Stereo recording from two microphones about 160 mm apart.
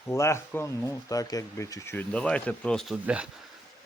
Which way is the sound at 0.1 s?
15° left (ahead or behind).